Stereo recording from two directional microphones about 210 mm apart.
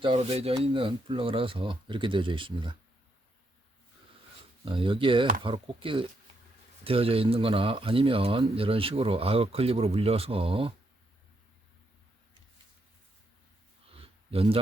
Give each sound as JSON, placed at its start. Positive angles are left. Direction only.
{"t": 0.0, "sound": "speech", "side_deg": -30}
{"t": 4.6, "sound": "speech", "side_deg": -25}
{"t": 14.0, "sound": "a sound", "side_deg": -25}